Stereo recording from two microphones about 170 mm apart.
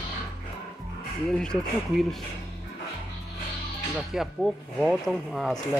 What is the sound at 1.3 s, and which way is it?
Speech, 5° left (ahead or behind).